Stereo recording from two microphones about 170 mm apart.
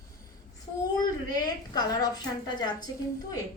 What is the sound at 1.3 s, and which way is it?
Speech, 25° left (ahead or behind).